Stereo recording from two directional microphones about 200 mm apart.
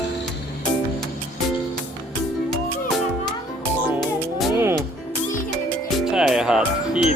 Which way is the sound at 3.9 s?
Centre (ahead or behind).